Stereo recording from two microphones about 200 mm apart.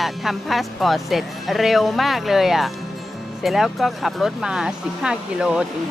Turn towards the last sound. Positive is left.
turn(degrees=-5)  # may be behind; listen again after turning